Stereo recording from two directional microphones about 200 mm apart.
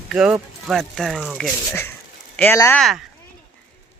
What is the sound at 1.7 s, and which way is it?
Speech, 15° left (ahead or behind).